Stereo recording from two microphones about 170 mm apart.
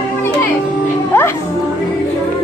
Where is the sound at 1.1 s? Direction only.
15° left (ahead or behind).